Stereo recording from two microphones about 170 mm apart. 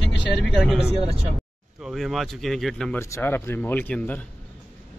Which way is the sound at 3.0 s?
15° left (ahead or behind).